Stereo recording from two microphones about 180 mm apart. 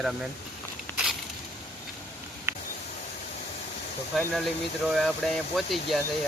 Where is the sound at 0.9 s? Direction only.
5° right (ahead or behind).